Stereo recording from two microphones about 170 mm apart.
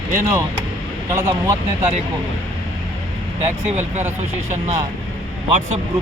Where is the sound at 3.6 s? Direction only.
45° right (ahead or behind).